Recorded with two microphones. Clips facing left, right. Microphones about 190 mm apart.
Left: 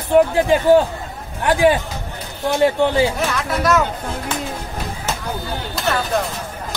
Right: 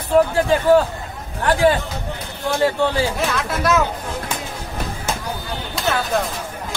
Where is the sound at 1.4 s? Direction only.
15° left (ahead or behind).